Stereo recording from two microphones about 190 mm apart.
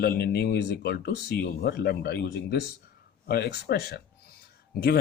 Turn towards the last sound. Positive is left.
turn(degrees=55)  # may be behind; listen again after turning